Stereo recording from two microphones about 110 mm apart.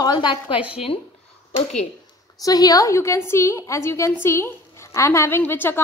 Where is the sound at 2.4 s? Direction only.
35° left (ahead or behind); by 5.7 s 20° left (ahead or behind).